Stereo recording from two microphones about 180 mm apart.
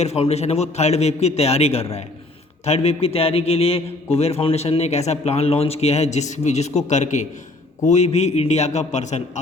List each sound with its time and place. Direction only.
0.0 s a man's voice: 35° left (ahead or behind)